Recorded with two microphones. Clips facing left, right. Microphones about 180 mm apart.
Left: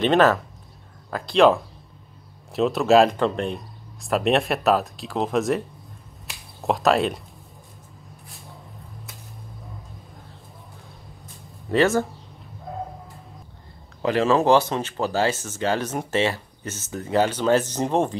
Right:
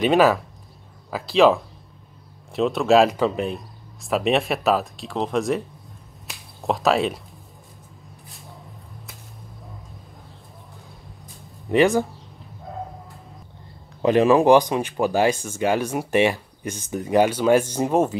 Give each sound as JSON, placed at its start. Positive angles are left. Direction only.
{"t": 0.0, "sound": "speech", "side_deg": -10}
{"t": 6.2, "sound": "a sound", "side_deg": 0}
{"t": 11.7, "sound": "speech", "side_deg": -15}
{"t": 14.0, "sound": "speech", "side_deg": -15}